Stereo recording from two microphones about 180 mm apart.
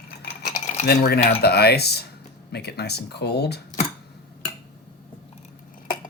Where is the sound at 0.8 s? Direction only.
60° left (ahead or behind).